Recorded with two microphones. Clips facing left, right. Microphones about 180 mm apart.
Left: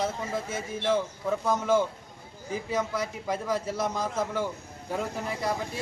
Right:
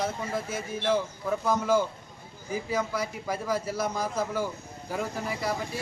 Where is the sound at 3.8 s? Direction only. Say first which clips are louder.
Even; 20° left (ahead or behind).